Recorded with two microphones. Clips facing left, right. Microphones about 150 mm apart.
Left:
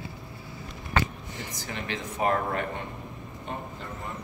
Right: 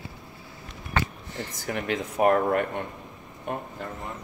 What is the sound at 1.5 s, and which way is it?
Speech, 55° right (ahead or behind).